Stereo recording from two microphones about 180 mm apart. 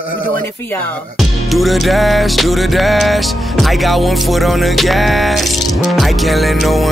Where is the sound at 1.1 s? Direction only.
Centre (ahead or behind).